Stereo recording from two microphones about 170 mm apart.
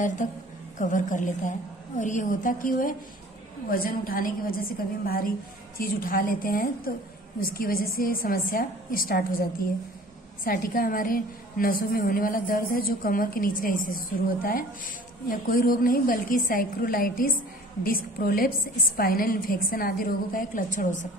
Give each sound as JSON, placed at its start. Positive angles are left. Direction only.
{"t": 0.7, "sound": "a woman's voice", "side_deg": 50}